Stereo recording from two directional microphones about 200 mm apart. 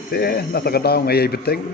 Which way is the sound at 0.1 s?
50° left (ahead or behind).